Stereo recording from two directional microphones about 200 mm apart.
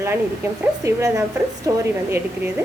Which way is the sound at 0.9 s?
15° right (ahead or behind).